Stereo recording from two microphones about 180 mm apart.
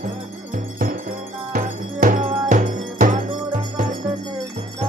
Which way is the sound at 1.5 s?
50° right (ahead or behind).